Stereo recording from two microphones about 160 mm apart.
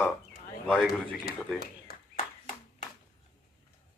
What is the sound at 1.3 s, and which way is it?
Speech, 75° left (ahead or behind).